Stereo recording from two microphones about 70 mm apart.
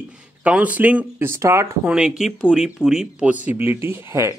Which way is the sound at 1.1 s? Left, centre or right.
Right.